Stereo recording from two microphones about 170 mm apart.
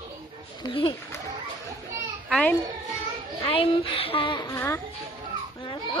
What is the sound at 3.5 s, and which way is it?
A woman's voice, 35° left (ahead or behind).